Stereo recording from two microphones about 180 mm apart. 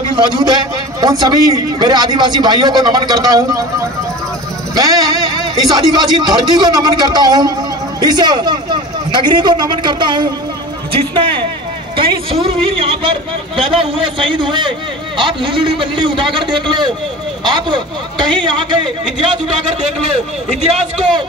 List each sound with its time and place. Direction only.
0.2 s a man's voice: 25° right (ahead or behind)
4.7 s a man's voice: 20° right (ahead or behind)